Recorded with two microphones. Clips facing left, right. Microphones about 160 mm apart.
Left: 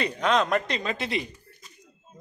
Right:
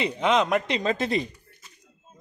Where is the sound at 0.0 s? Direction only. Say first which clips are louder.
Right 1 dB; 20° right (ahead or behind).